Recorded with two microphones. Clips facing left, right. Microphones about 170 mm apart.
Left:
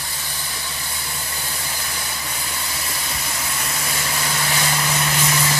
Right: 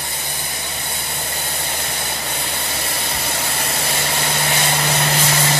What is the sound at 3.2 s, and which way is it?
Vehicle, 70° right (ahead or behind).